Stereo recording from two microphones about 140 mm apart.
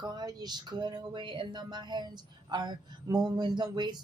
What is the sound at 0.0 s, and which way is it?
Speech, 30° right (ahead or behind).